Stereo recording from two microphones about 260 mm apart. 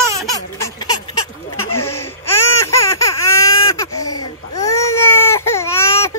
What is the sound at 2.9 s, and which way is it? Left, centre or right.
Baby cry, centre.